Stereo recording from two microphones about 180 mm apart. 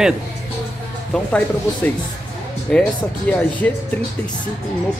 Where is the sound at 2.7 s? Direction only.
5° left (ahead or behind).